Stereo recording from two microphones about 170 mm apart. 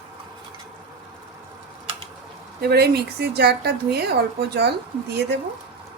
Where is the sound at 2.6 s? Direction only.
70° right (ahead or behind).